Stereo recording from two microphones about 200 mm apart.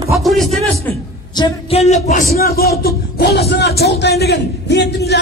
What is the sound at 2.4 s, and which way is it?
Speech, 50° left (ahead or behind).